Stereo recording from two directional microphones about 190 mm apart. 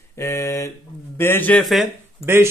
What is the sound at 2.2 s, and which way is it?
Speech, 15° right (ahead or behind).